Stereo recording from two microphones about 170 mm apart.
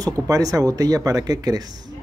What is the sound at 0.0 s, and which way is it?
A man's voice, 20° right (ahead or behind).